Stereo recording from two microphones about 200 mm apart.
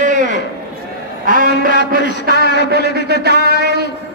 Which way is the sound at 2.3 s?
55° left (ahead or behind).